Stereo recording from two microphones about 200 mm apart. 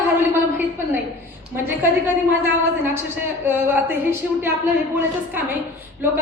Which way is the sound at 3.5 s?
10° right (ahead or behind).